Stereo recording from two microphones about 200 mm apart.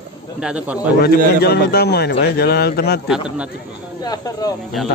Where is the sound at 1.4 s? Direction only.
50° left (ahead or behind).